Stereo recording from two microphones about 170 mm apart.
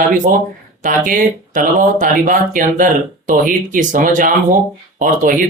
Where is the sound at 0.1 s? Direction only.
50° right (ahead or behind).